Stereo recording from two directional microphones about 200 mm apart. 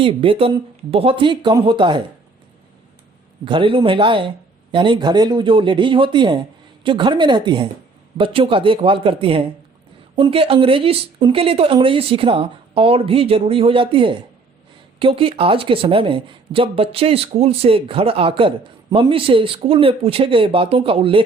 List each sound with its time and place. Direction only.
0.0 s speech: 25° right (ahead or behind)
3.4 s speech: 25° right (ahead or behind)